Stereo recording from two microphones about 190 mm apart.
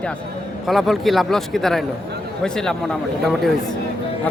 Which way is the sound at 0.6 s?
Centre (ahead or behind).